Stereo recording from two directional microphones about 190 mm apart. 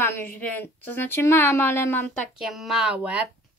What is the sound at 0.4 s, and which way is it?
A woman's voice, 10° left (ahead or behind).